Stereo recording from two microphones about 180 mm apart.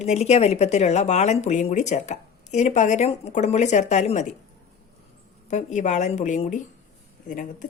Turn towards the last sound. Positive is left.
turn(degrees=45)  # may be behind; listen again after turning